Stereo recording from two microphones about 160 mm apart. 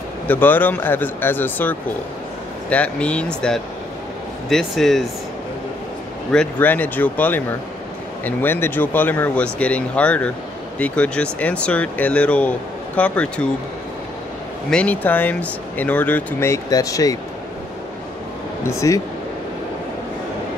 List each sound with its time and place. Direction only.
0.3 s speech: 10° left (ahead or behind)
6.3 s speech: 10° left (ahead or behind)
14.7 s speech: 10° left (ahead or behind)
18.6 s speech: 20° left (ahead or behind)